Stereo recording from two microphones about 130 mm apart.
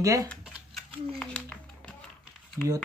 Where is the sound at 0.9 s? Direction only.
10° left (ahead or behind).